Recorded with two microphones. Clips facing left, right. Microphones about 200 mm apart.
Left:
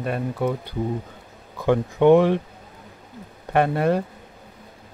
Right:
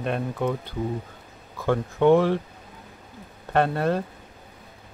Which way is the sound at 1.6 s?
15° left (ahead or behind).